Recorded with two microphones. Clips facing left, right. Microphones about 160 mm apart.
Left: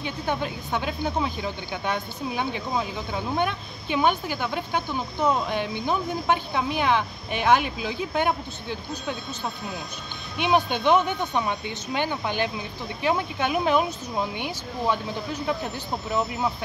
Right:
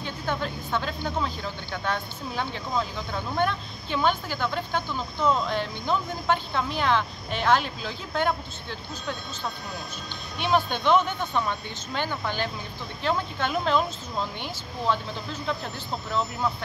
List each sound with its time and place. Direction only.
0.0 s speech: 15° left (ahead or behind)